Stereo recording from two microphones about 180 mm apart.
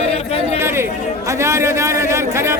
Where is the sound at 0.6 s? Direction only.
15° right (ahead or behind).